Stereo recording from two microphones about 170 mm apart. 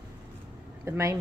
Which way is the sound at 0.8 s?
15° right (ahead or behind).